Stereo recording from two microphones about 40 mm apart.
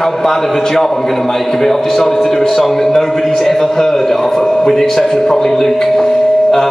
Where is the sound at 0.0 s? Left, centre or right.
Centre.